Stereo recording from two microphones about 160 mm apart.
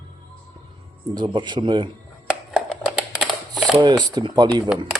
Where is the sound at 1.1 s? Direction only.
30° right (ahead or behind).